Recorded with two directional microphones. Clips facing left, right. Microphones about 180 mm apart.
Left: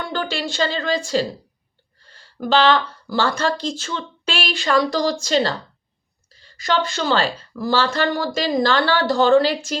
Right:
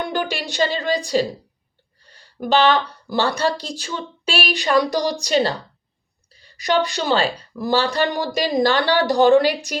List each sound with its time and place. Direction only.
0.0 s a woman's voice: 15° right (ahead or behind)
2.0 s a sound: 15° right (ahead or behind)
2.9 s a woman's voice: 15° right (ahead or behind)